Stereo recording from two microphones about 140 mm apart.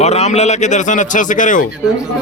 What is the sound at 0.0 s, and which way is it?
A man's voice, 50° left (ahead or behind).